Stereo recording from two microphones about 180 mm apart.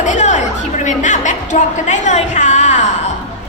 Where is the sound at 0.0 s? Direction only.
40° left (ahead or behind).